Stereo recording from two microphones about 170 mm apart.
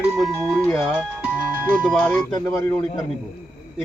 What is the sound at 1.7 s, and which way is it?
Speech, 5° left (ahead or behind).